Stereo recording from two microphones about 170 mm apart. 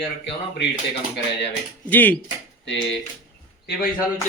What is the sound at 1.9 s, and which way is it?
Speech, 10° left (ahead or behind).